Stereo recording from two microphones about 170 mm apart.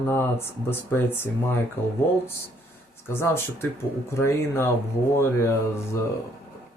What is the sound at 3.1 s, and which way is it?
Speech, 15° left (ahead or behind).